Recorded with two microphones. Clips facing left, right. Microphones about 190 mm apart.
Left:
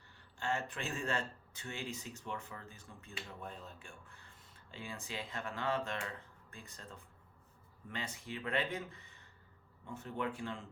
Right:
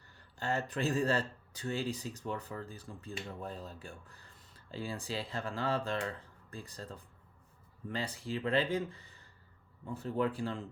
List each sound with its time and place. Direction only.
0.3 s speech: 40° right (ahead or behind)